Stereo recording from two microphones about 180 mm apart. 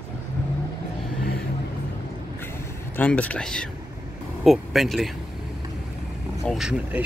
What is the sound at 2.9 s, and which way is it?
Speech, 10° left (ahead or behind).